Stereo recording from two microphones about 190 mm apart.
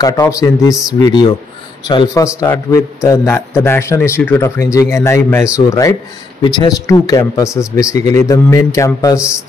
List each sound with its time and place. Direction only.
0.0 s a man's voice: 15° left (ahead or behind)